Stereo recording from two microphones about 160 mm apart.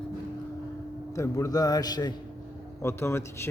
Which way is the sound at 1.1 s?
20° left (ahead or behind).